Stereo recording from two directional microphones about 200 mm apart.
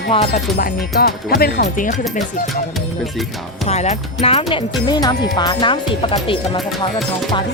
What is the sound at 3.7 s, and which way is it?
Speech, 35° left (ahead or behind).